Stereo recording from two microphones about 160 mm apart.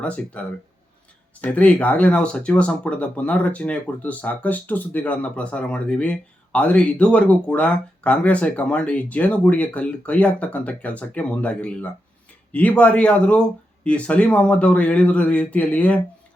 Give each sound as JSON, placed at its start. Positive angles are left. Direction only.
{"t": 0.0, "sound": "speech", "side_deg": 10}